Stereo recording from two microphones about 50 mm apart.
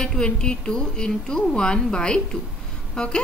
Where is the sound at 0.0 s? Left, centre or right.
Centre.